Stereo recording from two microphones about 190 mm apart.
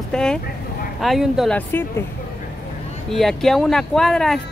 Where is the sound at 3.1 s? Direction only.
Centre (ahead or behind).